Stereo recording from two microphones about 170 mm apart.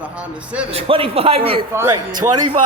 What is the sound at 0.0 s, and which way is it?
Speech, 10° right (ahead or behind).